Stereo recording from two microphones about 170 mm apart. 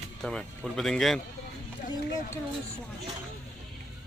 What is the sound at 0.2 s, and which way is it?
Speech, 5° left (ahead or behind).